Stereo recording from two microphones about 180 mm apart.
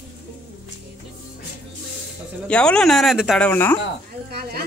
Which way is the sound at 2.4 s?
5° left (ahead or behind).